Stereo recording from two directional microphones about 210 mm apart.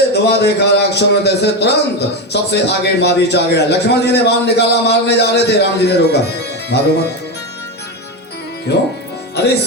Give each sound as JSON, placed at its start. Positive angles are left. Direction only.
{"t": 0.1, "sound": "a man's voice", "side_deg": 50}
{"t": 8.7, "sound": "a man's voice", "side_deg": 50}